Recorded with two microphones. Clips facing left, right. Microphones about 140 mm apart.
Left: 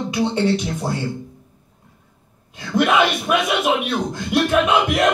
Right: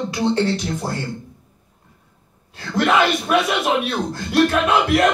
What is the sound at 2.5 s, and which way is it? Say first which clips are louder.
Speech: left 1 dB; 15° left (ahead or behind).